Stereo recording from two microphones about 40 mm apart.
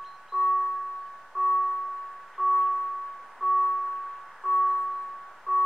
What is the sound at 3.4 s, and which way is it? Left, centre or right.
Music, centre.